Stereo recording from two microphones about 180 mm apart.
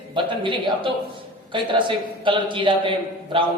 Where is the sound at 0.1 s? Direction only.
25° right (ahead or behind).